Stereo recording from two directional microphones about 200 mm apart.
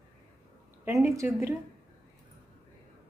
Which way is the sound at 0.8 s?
15° right (ahead or behind).